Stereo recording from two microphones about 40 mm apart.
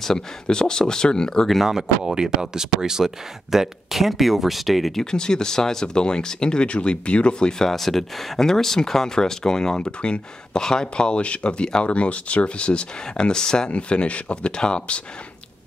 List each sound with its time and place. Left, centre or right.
0.0 s speech: centre
1.6 s speech: centre
5.1 s speech: centre
7.7 s speech: centre
13.7 s speech: left